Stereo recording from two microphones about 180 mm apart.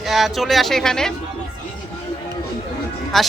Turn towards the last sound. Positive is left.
turn(degrees=0)  # may be behind; listen again after turning